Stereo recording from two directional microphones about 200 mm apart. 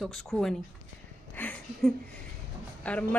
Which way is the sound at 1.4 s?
5° left (ahead or behind).